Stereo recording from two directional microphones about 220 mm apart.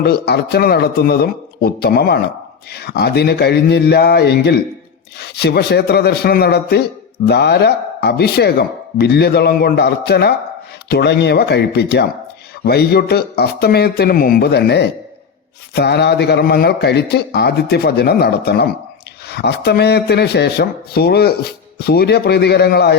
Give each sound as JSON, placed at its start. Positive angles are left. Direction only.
{"t": 0.0, "sound": "speech", "side_deg": 50}